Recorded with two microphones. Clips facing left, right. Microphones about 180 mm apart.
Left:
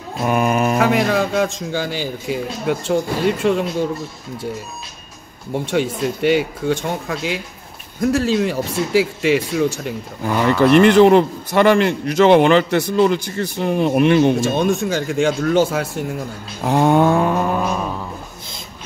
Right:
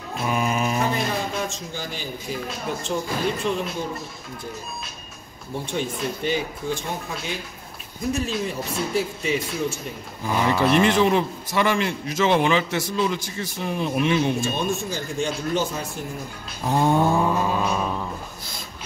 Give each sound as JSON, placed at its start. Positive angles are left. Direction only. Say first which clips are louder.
{"t": 0.2, "sound": "speech", "louder": "left 7 dB", "side_deg": 60}
{"t": 3.4, "sound": "a man's voice", "louder": "left 10 dB", "side_deg": 65}
{"t": 5.5, "sound": "a man's voice", "louder": "left 8 dB", "side_deg": 75}
{"t": 16.6, "sound": "mantra", "louder": "left 6 dB", "side_deg": 85}
{"t": 17.6, "sound": "a sound", "louder": "left 2 dB", "side_deg": 5}